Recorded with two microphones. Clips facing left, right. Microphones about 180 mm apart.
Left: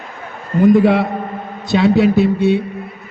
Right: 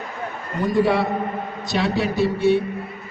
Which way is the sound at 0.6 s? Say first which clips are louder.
Left 8 dB; 55° left (ahead or behind).